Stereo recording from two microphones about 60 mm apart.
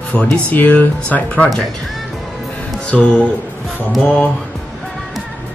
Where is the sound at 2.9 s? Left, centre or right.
Centre.